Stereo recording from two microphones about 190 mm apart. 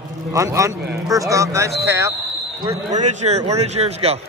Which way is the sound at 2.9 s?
35° right (ahead or behind).